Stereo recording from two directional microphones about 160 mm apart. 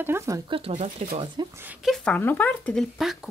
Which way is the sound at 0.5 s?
35° right (ahead or behind).